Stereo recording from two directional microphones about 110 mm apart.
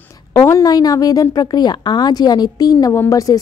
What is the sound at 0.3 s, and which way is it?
A woman's voice, 30° left (ahead or behind).